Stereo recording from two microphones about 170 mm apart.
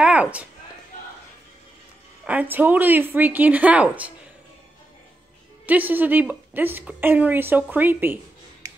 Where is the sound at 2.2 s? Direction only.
10° right (ahead or behind).